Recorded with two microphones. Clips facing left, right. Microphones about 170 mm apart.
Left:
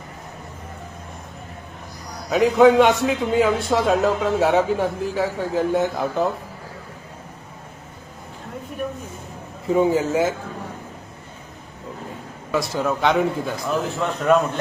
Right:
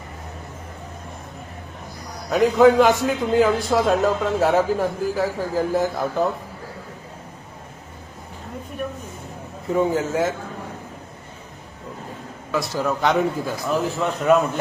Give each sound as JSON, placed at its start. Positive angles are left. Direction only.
{"t": 2.3, "sound": "a man's voice", "side_deg": 0}
{"t": 9.6, "sound": "a man's voice", "side_deg": 0}
{"t": 12.5, "sound": "a man's voice", "side_deg": 0}